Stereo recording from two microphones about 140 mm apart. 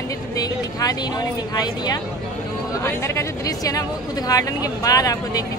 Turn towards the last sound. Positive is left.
turn(degrees=25)  # may be behind; listen again after turning